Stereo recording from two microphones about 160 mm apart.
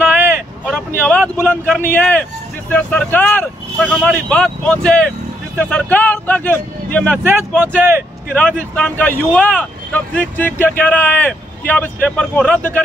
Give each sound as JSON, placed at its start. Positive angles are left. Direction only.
{"t": 0.0, "sound": "vehicle", "side_deg": -15}
{"t": 0.7, "sound": "speech", "side_deg": 5}
{"t": 7.2, "sound": "speech", "side_deg": -15}
{"t": 8.3, "sound": "speech", "side_deg": 5}